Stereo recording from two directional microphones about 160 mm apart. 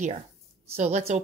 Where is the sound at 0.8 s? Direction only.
45° right (ahead or behind).